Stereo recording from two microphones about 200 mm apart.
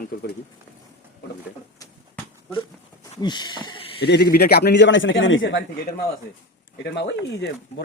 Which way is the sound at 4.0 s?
55° left (ahead or behind).